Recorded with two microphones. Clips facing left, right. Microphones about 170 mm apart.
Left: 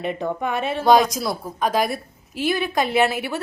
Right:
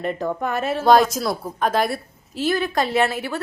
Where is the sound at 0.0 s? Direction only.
Centre (ahead or behind).